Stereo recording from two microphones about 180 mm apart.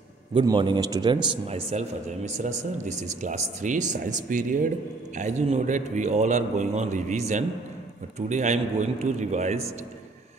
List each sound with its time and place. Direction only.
0.3 s a man's voice: 25° right (ahead or behind)
1.5 s a man's voice: 35° right (ahead or behind)